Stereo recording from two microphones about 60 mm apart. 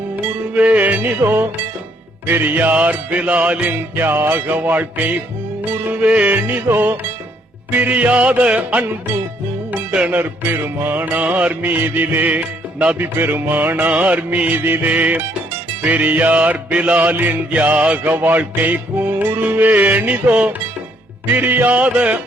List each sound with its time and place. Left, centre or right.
0.5 s music: right
10.1 s music: right
13.0 s music: right